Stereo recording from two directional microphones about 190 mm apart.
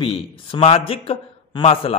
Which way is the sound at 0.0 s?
30° left (ahead or behind).